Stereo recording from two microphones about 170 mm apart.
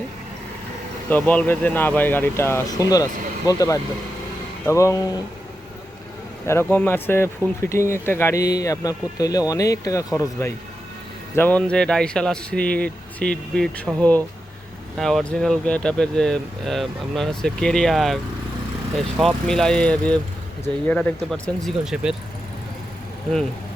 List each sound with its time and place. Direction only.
1.1 s speech: 10° left (ahead or behind)
6.5 s speech: 10° left (ahead or behind)